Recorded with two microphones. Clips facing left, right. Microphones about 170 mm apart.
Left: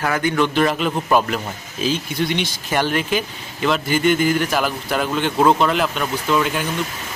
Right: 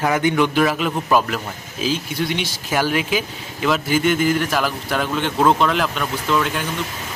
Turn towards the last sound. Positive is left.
turn(degrees=5)  # may be behind; listen again after turning